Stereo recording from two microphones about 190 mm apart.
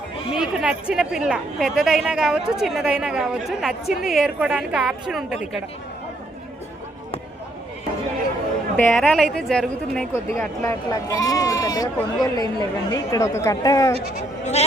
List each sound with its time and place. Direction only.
0.3 s speech: 5° right (ahead or behind)
8.7 s speech: 5° left (ahead or behind)
10.3 s speech: 15° left (ahead or behind)